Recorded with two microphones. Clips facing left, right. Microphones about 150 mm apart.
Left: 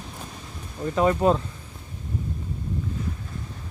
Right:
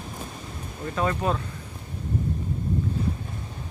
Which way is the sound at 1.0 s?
20° left (ahead or behind).